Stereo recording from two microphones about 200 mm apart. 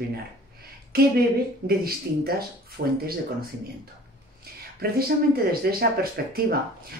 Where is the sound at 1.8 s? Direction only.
50° right (ahead or behind).